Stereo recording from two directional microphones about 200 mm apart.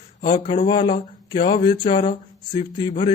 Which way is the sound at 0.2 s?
25° left (ahead or behind).